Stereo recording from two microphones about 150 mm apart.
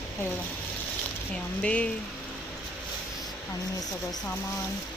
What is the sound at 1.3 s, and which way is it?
Speech, 10° left (ahead or behind).